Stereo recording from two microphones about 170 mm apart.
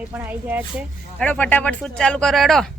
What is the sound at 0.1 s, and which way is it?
Speech, 10° right (ahead or behind).